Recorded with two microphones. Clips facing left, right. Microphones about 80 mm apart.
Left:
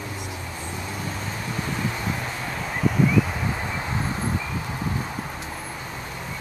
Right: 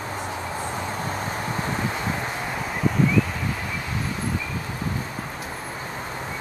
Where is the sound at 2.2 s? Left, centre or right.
Right.